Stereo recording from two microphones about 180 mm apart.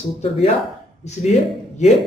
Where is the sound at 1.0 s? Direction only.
40° left (ahead or behind).